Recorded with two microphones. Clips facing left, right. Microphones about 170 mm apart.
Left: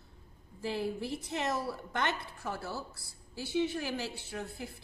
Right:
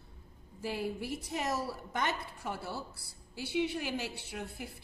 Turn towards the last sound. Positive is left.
turn(degrees=-10)  # may be behind; listen again after turning